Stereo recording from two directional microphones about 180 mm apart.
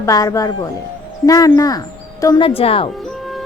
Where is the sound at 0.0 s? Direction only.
20° left (ahead or behind).